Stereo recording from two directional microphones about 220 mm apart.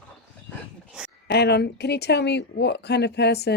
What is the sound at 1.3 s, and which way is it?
Speech, 50° left (ahead or behind).